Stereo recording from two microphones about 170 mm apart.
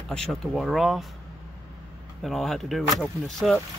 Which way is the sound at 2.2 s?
Centre (ahead or behind).